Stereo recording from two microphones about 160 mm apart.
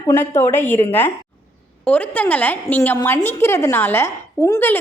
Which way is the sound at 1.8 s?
10° left (ahead or behind).